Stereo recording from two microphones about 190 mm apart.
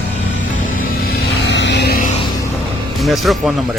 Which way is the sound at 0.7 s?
60° left (ahead or behind).